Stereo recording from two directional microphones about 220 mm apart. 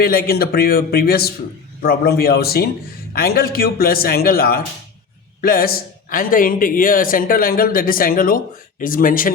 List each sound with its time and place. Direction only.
0.0 s a man's voice: 40° left (ahead or behind)